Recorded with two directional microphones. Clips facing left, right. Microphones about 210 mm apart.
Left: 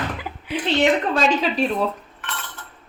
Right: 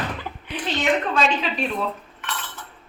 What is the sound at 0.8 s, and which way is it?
Speech, 35° left (ahead or behind).